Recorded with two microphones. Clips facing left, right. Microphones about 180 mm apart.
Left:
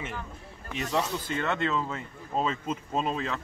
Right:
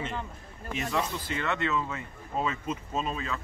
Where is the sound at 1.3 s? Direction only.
50° left (ahead or behind).